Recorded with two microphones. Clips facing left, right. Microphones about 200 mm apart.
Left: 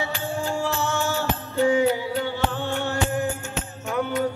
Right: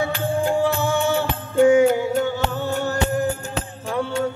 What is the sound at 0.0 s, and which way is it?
Music, 50° right (ahead or behind).